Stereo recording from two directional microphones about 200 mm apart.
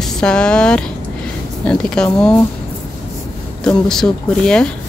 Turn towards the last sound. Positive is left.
turn(degrees=5)  # may be behind; listen again after turning